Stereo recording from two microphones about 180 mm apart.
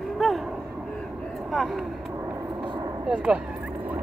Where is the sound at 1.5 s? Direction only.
Centre (ahead or behind).